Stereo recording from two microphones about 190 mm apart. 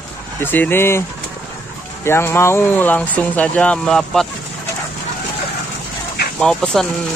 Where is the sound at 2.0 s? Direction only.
15° left (ahead or behind).